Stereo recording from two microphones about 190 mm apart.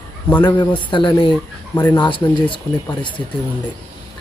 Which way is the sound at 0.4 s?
20° left (ahead or behind).